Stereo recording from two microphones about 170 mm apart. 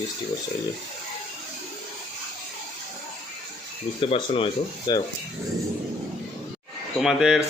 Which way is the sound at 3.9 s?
35° left (ahead or behind).